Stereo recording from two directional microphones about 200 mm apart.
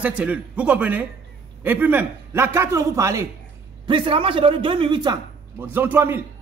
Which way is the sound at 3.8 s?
25° right (ahead or behind).